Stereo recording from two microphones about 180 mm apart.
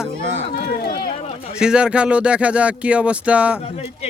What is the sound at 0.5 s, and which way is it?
Run, 60° left (ahead or behind).